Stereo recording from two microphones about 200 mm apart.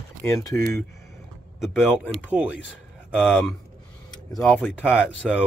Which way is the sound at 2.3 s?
10° right (ahead or behind).